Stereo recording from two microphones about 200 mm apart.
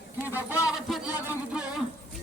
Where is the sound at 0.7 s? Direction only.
Centre (ahead or behind).